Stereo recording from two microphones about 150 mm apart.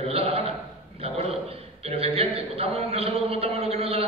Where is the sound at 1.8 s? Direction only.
40° right (ahead or behind).